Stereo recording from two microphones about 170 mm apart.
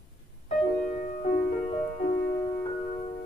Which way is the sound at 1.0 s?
50° left (ahead or behind).